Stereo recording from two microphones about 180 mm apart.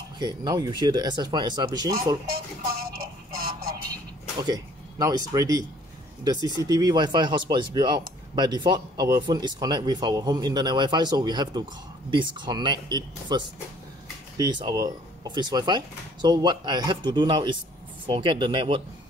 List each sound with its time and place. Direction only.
0.2 s speech: 25° right (ahead or behind)
4.4 s speech: 20° right (ahead or behind)